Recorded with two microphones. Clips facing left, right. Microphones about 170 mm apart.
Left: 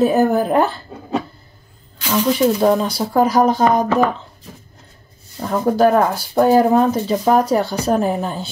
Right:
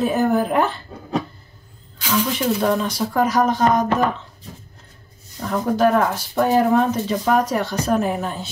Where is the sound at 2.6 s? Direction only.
35° left (ahead or behind).